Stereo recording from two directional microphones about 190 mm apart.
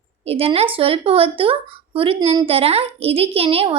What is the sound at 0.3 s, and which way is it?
A woman's voice, 30° right (ahead or behind).